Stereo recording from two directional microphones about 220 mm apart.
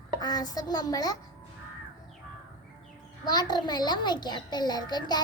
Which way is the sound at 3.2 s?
20° left (ahead or behind).